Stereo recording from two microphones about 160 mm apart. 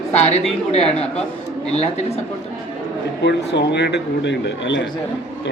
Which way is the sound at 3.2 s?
90° left.